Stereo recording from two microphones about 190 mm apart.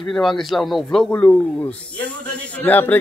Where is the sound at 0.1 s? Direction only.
Centre (ahead or behind).